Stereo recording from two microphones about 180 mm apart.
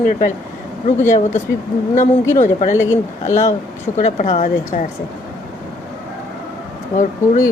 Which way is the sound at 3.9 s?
40° left (ahead or behind).